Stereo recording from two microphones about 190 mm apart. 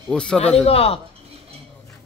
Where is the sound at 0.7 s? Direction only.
30° left (ahead or behind).